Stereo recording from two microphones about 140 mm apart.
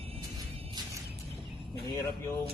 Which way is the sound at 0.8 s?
30° right (ahead or behind).